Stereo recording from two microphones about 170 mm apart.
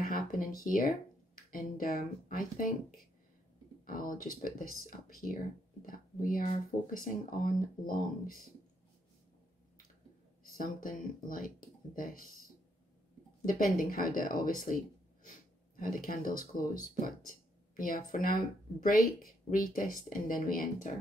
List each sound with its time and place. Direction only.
0.0 s a sound: 55° left (ahead or behind)
1.5 s speech: 55° left (ahead or behind)
3.8 s speech: 55° left (ahead or behind)
10.6 s speech: 55° left (ahead or behind)
13.5 s speech: 55° left (ahead or behind)